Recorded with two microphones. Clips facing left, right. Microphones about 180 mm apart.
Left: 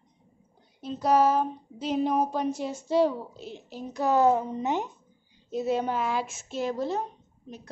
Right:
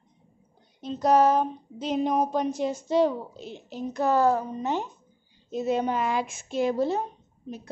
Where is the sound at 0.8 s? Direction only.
5° left (ahead or behind).